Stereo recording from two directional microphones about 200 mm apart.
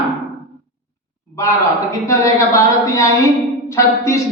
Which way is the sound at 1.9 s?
15° left (ahead or behind).